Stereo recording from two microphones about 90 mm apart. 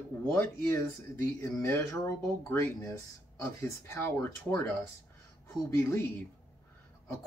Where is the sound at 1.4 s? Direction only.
30° left (ahead or behind).